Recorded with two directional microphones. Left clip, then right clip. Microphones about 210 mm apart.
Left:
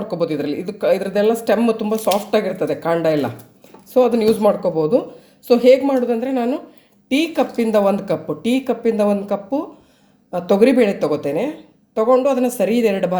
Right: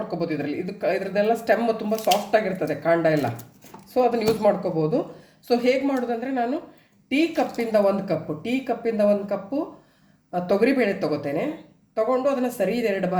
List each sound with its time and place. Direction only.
0.1 s speech: 35° left (ahead or behind)